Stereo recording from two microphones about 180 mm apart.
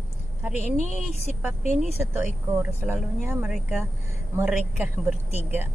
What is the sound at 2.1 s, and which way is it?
Speech, 10° right (ahead or behind).